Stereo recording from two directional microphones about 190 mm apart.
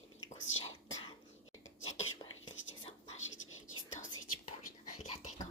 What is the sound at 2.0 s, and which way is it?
Whispering, 90° left.